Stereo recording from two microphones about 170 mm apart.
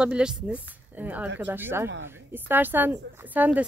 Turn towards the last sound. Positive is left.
turn(degrees=-10)  # may be behind; listen again after turning